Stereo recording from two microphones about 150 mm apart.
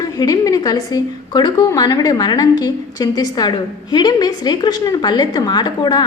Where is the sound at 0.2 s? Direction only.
25° left (ahead or behind).